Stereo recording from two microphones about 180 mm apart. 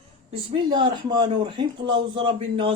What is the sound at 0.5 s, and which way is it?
Speech, 25° right (ahead or behind).